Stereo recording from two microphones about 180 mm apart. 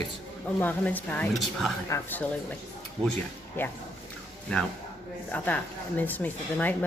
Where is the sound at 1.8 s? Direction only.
10° left (ahead or behind).